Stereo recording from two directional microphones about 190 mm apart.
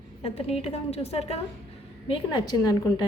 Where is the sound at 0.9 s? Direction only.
30° left (ahead or behind).